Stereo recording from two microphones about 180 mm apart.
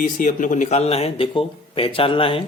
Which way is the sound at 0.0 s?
45° left (ahead or behind).